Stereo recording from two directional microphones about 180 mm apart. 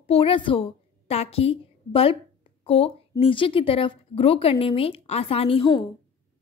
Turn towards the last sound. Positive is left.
turn(degrees=25)  # may be behind; listen again after turning